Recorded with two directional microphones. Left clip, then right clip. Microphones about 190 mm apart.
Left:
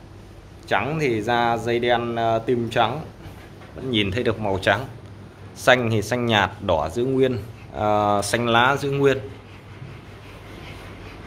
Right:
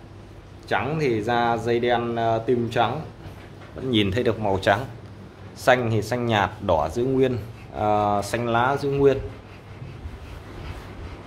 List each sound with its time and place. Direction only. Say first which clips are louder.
0.7 s speech: left 1 dB; 5° left (ahead or behind)
3.9 s speech: even; 20° right (ahead or behind)
4.2 s speech: even; 10° right (ahead or behind)
5.6 s speech: left 2 dB; 5° left (ahead or behind)